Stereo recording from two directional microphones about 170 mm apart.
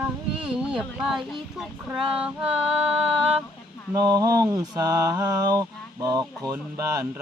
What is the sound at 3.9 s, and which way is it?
Mantra, 20° right (ahead or behind).